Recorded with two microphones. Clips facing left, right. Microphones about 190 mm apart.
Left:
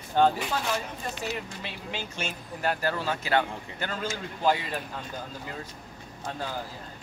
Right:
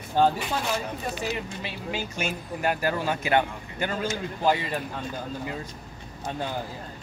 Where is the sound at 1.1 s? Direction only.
5° right (ahead or behind).